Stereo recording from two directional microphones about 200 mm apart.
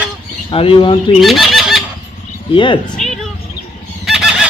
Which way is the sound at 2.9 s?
5° left (ahead or behind).